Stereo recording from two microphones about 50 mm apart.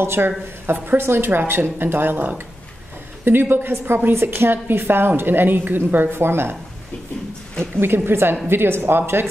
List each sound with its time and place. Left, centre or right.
0.0 s a woman's voice: right
7.7 s a woman's voice: right